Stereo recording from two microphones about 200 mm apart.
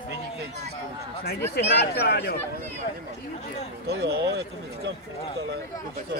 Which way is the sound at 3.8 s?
55° right (ahead or behind).